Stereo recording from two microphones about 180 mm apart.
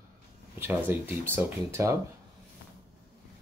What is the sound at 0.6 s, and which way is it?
Speech, 10° right (ahead or behind).